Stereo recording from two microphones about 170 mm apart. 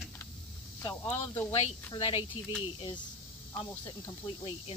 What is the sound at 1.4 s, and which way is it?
Speech, 15° left (ahead or behind).